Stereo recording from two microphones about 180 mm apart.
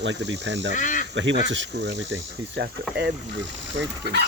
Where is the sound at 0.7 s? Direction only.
45° left (ahead or behind).